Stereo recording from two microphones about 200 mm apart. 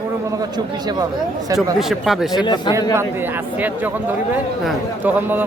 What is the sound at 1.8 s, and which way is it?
Speech, centre (ahead or behind).